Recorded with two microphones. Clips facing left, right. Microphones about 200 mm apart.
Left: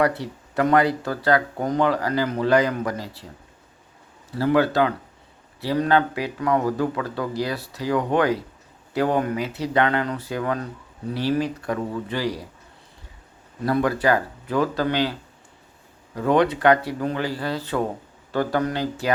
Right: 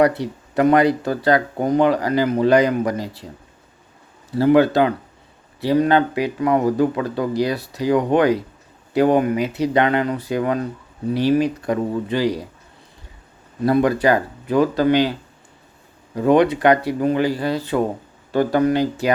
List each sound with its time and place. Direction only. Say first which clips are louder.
0.0 s speech: right 5 dB; 15° right (ahead or behind)
4.4 s speech: right 5 dB; 20° right (ahead or behind)
13.7 s speech: right 4 dB; 20° right (ahead or behind)
16.1 s speech: right 4 dB; 15° right (ahead or behind)